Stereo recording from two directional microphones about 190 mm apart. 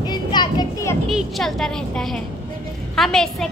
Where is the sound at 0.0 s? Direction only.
20° left (ahead or behind).